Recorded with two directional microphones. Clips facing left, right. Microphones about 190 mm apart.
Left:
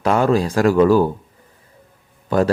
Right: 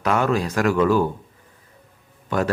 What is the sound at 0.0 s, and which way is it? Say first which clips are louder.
Speech: left 4 dB; 30° left (ahead or behind).